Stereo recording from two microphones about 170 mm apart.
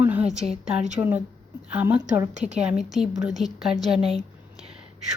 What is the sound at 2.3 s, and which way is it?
Speech, 40° right (ahead or behind).